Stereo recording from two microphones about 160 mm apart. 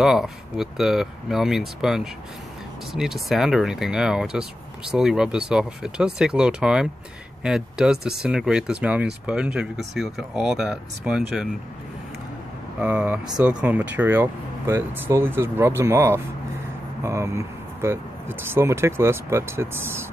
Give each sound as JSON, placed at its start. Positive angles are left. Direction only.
{"t": 0.0, "sound": "speech", "side_deg": 0}
{"t": 12.8, "sound": "speech", "side_deg": -10}